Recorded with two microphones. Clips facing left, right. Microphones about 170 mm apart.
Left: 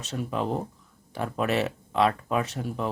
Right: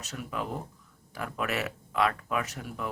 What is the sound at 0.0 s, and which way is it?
Speech, 30° left (ahead or behind).